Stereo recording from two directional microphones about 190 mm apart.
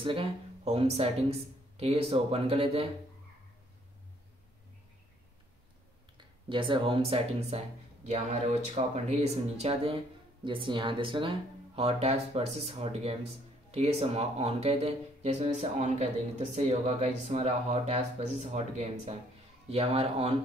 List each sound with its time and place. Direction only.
0.0 s speech: 30° right (ahead or behind)
6.1 s speech: 25° right (ahead or behind)